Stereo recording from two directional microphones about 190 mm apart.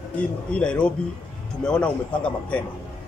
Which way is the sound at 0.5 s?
5° left (ahead or behind).